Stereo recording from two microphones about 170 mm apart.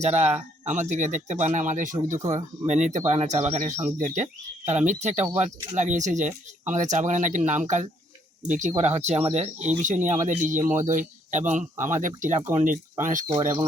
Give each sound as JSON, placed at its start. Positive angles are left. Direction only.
{"t": 0.0, "sound": "speech", "side_deg": -40}
{"t": 11.8, "sound": "speech", "side_deg": -15}
{"t": 12.0, "sound": "speech", "side_deg": -50}